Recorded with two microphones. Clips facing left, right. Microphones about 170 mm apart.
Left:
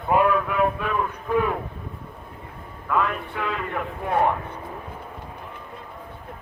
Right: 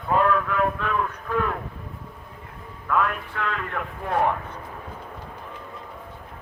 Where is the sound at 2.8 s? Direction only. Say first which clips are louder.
Even; centre (ahead or behind).